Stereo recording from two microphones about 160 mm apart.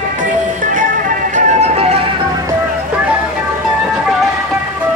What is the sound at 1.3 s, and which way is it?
Music, 40° right (ahead or behind).